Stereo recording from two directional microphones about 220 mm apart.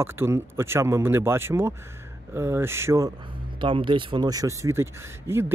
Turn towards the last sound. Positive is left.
turn(degrees=-10)  # may be behind; listen again after turning